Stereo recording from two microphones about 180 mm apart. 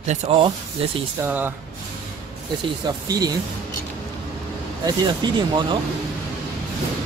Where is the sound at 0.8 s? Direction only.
30° right (ahead or behind).